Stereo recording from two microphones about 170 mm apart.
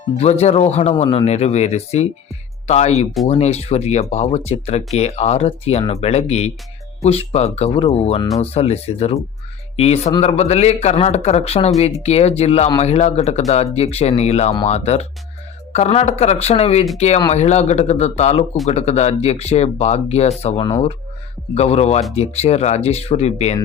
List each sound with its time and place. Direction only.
0.2 s speech: 40° left (ahead or behind)